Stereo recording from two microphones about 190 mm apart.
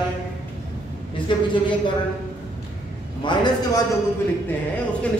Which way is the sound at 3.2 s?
25° left (ahead or behind).